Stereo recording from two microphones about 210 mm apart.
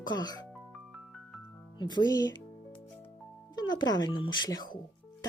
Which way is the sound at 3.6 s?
20° left (ahead or behind).